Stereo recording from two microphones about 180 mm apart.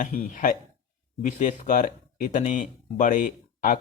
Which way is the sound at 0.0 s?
50° left (ahead or behind).